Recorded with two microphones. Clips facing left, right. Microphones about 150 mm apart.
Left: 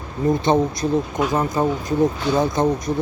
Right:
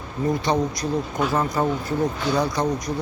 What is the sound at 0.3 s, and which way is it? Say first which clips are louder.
Speech: left 5 dB; 25° left (ahead or behind).